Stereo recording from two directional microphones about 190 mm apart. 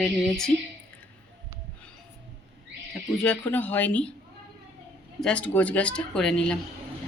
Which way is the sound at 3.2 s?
5° left (ahead or behind).